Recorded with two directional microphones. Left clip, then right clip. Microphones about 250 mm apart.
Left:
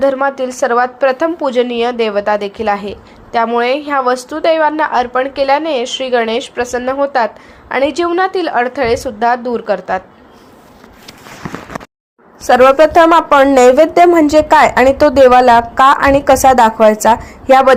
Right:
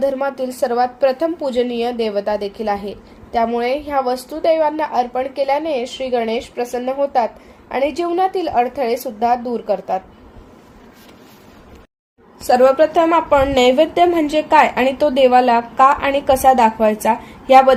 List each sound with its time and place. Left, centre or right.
0.0 s a woman's voice: centre
12.5 s a woman's voice: centre
13.8 s a woman's voice: centre
14.9 s a woman's voice: centre
15.3 s a woman's voice: left